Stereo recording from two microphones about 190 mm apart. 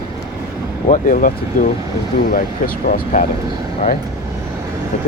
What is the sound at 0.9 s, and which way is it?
Speech, 45° left (ahead or behind).